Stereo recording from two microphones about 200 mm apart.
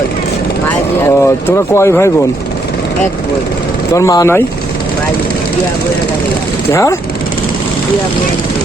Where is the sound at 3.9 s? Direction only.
15° left (ahead or behind).